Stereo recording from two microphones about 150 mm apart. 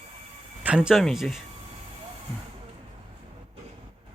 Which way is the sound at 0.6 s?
5° right (ahead or behind).